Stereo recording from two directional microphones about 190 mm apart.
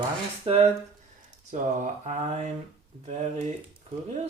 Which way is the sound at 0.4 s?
30° right (ahead or behind).